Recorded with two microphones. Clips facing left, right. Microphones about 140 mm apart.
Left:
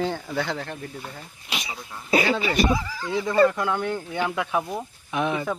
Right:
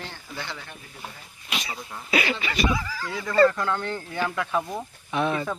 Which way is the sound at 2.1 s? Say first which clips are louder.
Left 5 dB; 40° left (ahead or behind).